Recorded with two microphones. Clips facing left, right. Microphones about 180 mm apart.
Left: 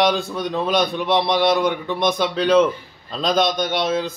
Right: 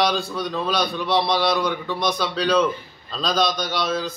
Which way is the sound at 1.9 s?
20° left (ahead or behind).